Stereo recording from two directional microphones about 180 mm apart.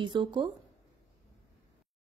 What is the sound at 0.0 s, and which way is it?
Speech, 25° right (ahead or behind).